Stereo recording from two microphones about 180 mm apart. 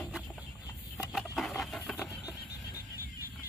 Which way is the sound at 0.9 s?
Centre (ahead or behind).